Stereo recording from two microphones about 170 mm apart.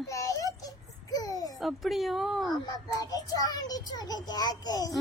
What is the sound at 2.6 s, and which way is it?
A child's voice, 25° left (ahead or behind).